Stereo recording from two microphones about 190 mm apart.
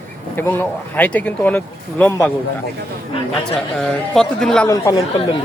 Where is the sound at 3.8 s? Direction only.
5° left (ahead or behind).